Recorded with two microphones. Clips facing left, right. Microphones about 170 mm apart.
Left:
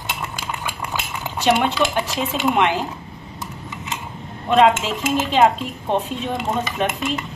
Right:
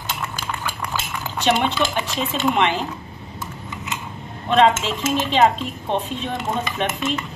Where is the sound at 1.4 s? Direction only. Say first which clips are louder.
Left 2 dB; 5° left (ahead or behind).